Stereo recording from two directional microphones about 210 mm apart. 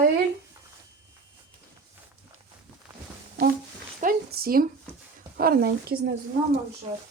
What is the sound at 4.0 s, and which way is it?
Speech, 45° right (ahead or behind).